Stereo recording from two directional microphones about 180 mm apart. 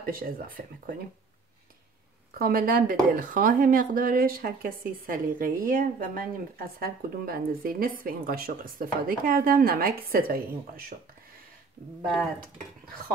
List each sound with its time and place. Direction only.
0.0 s speech: 55° right (ahead or behind)
2.3 s speech: 55° right (ahead or behind)
12.0 s speech: centre (ahead or behind)